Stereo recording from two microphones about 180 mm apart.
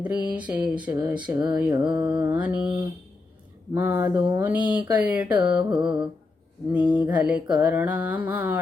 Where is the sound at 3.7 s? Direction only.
10° right (ahead or behind).